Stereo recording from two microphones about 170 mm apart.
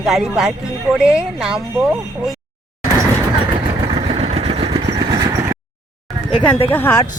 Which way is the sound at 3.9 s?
35° right (ahead or behind).